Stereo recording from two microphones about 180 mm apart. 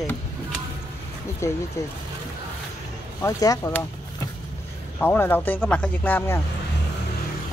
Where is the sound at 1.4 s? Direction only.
15° left (ahead or behind).